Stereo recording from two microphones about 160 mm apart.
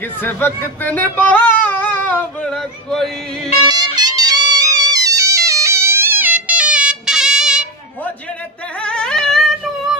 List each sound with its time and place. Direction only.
0.2 s speech: 15° left (ahead or behind)
3.6 s music: 25° right (ahead or behind); by 7.6 s 5° right (ahead or behind)
8.8 s a sound: 5° left (ahead or behind)